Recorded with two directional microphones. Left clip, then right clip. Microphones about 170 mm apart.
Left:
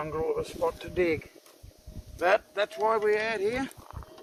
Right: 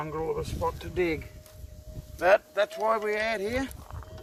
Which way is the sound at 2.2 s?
35° right (ahead or behind).